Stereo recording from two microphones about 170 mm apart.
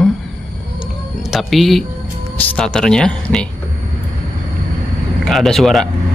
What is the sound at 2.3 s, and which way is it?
Speech, 10° left (ahead or behind).